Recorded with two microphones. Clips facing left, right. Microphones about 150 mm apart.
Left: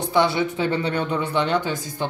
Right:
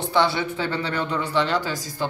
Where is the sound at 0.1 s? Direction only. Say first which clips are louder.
Left 2 dB; 20° left (ahead or behind).